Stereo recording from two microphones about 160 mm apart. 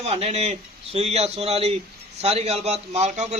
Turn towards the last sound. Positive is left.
turn(degrees=-45)  # may be behind; listen again after turning